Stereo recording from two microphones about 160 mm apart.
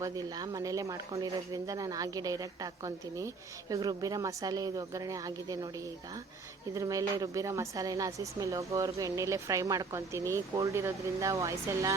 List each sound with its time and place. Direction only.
0.0 s speech: 25° right (ahead or behind)
6.7 s speech: 20° right (ahead or behind)